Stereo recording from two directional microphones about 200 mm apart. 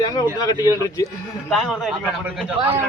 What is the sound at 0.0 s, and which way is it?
Speech, 20° left (ahead or behind).